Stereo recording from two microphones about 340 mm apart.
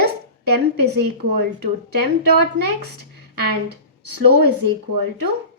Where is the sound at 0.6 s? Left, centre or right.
Right.